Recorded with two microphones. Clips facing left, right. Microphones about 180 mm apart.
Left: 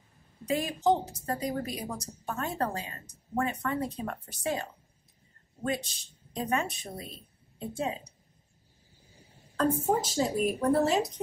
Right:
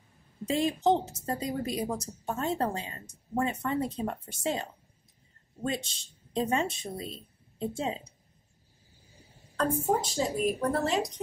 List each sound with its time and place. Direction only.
0.5 s a woman's voice: 25° right (ahead or behind)
9.6 s a woman's voice: 5° left (ahead or behind)